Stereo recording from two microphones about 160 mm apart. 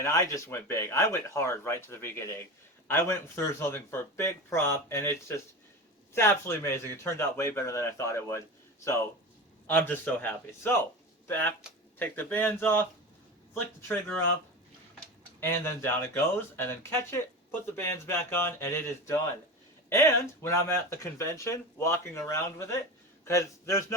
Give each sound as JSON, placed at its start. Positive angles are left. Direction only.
{"t": 0.0, "sound": "speech", "side_deg": 20}
{"t": 15.4, "sound": "a man's voice", "side_deg": 15}